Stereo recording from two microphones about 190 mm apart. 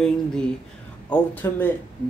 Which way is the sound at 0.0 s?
5° left (ahead or behind).